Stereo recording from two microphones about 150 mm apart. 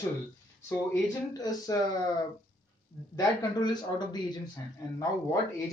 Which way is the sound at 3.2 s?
25° left (ahead or behind).